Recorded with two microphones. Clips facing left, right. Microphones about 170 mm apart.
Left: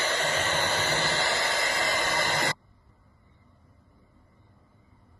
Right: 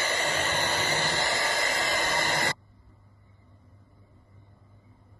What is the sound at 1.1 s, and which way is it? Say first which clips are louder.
Hair dryer: left 1 dB; 45° right (ahead or behind).